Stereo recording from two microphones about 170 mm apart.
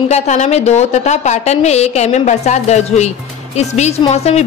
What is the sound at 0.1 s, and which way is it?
A woman's voice, 40° left (ahead or behind).